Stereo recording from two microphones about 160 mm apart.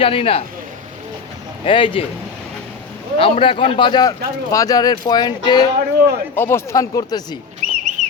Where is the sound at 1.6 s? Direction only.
35° left (ahead or behind).